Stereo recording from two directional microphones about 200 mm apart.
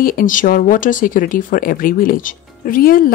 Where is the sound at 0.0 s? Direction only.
45° left (ahead or behind).